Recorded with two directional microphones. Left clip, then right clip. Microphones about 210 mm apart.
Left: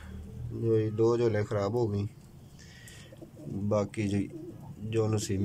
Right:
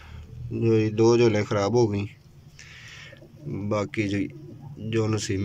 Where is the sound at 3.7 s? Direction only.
10° left (ahead or behind).